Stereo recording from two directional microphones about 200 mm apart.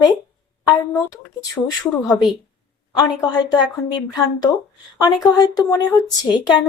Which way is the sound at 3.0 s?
20° left (ahead or behind).